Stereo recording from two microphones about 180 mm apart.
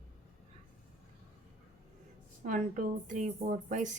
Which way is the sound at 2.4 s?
45° right (ahead or behind).